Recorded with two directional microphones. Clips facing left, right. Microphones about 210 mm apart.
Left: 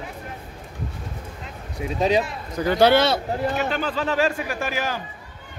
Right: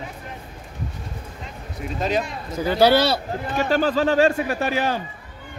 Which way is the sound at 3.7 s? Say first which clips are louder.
Right 6 dB; 40° right (ahead or behind).